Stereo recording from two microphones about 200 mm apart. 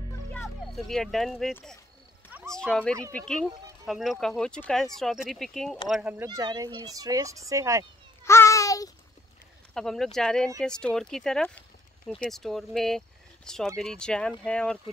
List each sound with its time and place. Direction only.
0.3 s speech: 5° left (ahead or behind)
6.2 s speech: 20° right (ahead or behind)
8.3 s babbling: 15° left (ahead or behind)
9.8 s speech: centre (ahead or behind)